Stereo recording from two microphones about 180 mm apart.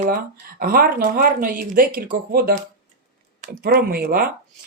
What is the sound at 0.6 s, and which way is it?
Speech, 55° right (ahead or behind).